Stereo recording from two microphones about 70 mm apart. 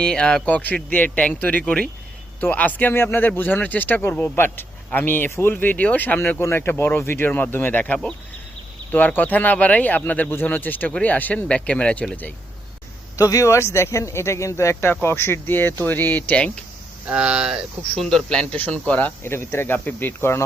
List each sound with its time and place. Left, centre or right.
0.0 s speech: centre
13.1 s speech: left; by 16.6 s centre
17.1 s speech: centre
18.0 s speech: centre
18.5 s speech: centre